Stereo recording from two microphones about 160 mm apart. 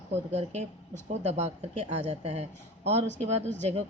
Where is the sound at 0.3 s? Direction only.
45° right (ahead or behind).